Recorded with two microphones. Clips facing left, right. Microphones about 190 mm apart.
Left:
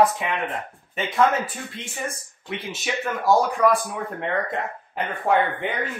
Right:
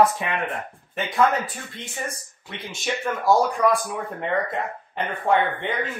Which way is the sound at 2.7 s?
Centre (ahead or behind).